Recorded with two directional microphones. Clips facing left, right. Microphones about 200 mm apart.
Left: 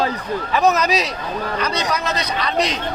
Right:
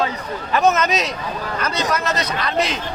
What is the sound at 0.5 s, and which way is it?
Speech, centre (ahead or behind).